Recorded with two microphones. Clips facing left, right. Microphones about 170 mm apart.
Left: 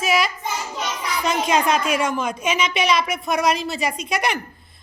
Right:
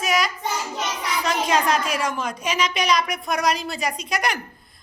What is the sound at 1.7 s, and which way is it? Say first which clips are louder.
Speech: left 3 dB; 35° right (ahead or behind).